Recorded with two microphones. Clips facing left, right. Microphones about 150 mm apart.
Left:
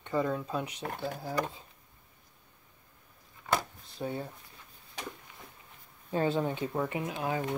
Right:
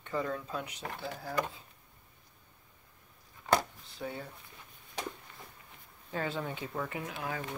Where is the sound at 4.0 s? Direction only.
25° left (ahead or behind).